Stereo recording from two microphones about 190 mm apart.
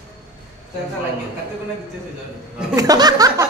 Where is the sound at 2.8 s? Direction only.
20° right (ahead or behind).